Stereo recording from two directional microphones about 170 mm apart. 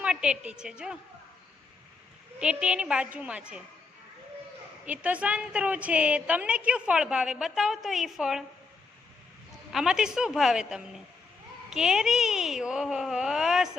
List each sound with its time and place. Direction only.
0.0 s a woman's voice: 5° right (ahead or behind)
2.4 s a woman's voice: 5° right (ahead or behind)
4.9 s a woman's voice: 10° right (ahead or behind)
9.7 s speech: 5° right (ahead or behind)